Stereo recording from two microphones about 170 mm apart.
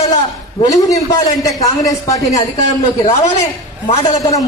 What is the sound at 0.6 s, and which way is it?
A man's voice, 20° left (ahead or behind).